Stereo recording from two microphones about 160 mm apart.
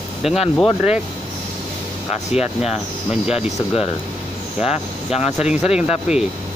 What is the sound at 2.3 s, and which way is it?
Speech, 40° left (ahead or behind).